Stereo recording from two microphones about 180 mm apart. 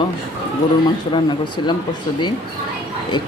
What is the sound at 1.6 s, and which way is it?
Speech, 25° left (ahead or behind).